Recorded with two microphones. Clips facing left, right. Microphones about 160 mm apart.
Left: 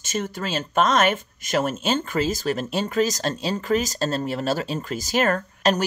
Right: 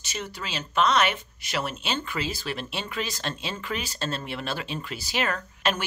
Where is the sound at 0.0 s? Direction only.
45° left (ahead or behind).